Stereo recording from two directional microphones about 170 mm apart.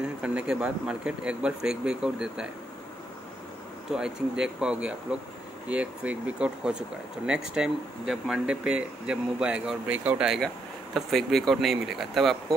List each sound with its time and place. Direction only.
0.0 s speech: 5° right (ahead or behind)
3.9 s speech: 5° right (ahead or behind)